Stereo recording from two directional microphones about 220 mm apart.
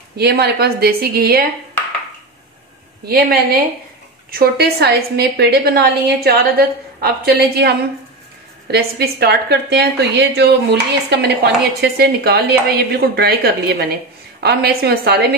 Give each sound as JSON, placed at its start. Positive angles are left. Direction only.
{"t": 0.2, "sound": "a woman's voice", "side_deg": -45}
{"t": 4.3, "sound": "a woman's voice", "side_deg": -45}